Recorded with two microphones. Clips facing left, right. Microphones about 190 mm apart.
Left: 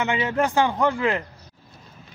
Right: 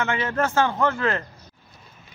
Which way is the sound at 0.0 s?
15° left (ahead or behind).